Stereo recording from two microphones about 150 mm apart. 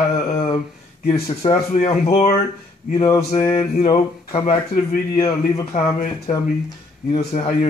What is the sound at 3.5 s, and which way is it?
Speech, 45° left (ahead or behind).